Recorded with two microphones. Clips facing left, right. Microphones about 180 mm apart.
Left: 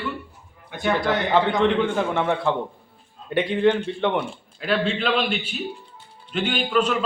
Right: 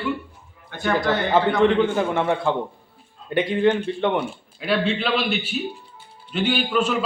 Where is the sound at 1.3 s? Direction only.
Centre (ahead or behind).